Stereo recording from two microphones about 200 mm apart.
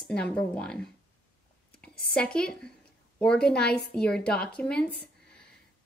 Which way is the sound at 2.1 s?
5° left (ahead or behind).